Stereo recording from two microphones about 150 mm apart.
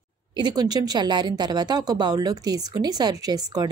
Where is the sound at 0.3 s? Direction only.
30° right (ahead or behind).